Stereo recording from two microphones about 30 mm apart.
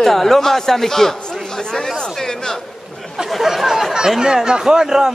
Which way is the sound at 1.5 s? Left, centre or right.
Centre.